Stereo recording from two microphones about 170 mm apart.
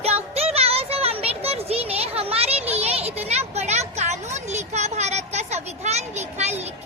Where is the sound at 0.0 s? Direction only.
35° right (ahead or behind).